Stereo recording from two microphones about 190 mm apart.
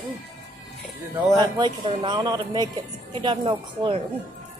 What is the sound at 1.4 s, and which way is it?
Speech, 25° right (ahead or behind).